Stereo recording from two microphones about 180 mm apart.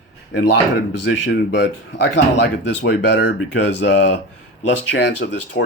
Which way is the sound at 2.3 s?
75° left (ahead or behind).